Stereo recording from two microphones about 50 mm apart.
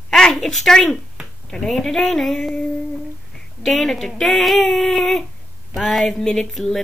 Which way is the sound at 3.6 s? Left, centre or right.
Centre.